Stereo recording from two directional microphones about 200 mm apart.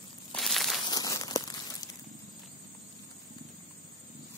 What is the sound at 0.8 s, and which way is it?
Crumpling, 20° left (ahead or behind).